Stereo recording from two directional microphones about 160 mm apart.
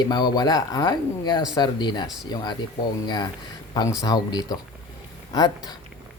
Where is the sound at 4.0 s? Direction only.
25° left (ahead or behind).